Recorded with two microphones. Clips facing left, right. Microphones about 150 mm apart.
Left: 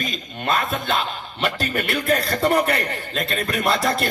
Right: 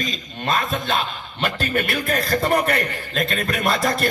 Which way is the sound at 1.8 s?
30° left (ahead or behind).